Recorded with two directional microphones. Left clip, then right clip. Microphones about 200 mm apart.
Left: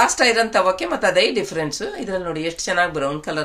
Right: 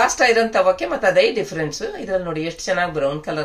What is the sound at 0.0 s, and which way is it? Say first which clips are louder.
Speech: right 1 dB; 35° left (ahead or behind).